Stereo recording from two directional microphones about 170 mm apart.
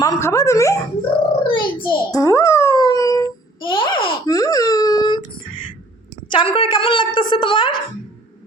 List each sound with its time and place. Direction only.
0.0 s speech: 20° left (ahead or behind)
1.5 s a sound: 30° left (ahead or behind)
6.2 s a woman's voice: 30° left (ahead or behind)